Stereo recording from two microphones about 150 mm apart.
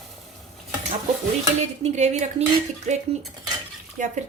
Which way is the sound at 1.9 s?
50° right (ahead or behind).